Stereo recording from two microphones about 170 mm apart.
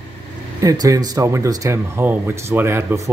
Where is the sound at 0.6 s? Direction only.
20° right (ahead or behind).